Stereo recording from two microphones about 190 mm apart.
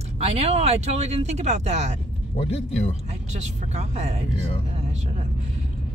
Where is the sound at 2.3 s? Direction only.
35° left (ahead or behind).